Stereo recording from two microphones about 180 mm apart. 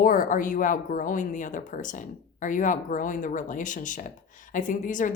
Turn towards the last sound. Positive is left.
turn(degrees=45)  # may be behind; listen again after turning